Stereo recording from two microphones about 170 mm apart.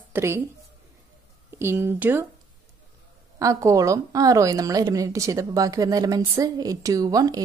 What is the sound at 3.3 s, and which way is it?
A woman's voice, 20° right (ahead or behind).